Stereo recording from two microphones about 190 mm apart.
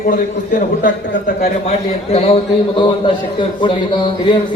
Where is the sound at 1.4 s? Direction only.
35° left (ahead or behind).